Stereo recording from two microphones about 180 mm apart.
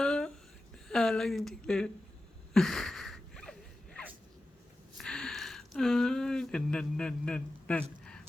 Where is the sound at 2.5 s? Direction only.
5° left (ahead or behind).